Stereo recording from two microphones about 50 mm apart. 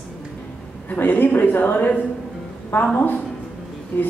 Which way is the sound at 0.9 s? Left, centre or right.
Left.